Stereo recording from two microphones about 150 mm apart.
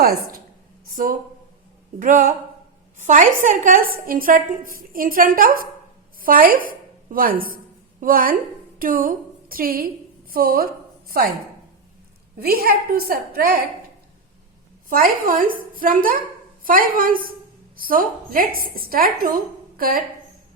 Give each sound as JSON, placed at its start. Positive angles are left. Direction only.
{"t": 0.0, "sound": "a sound", "side_deg": -85}
{"t": 0.9, "sound": "a woman's voice", "side_deg": -65}
{"t": 12.4, "sound": "a woman's voice", "side_deg": -90}
{"t": 14.8, "sound": "a woman's voice", "side_deg": -70}